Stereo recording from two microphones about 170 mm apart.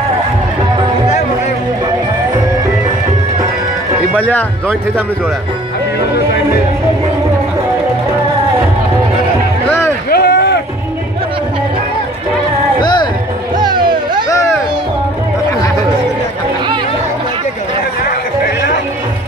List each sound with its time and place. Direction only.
4.2 s a man's voice: 10° left (ahead or behind)
9.7 s music: 15° left (ahead or behind)
10.0 s a sound: 75° left (ahead or behind)
12.8 s music: 25° left (ahead or behind)
13.6 s music: 25° right (ahead or behind)